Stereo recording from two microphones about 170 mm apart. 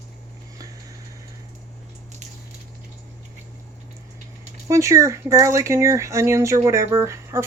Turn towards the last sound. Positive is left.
turn(degrees=-15)  # may be behind; listen again after turning